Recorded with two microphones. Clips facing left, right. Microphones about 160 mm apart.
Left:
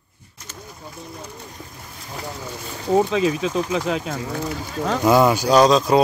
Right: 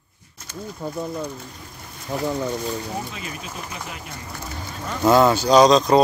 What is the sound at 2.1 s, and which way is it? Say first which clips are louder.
Speech: right 8 dB; 90° right.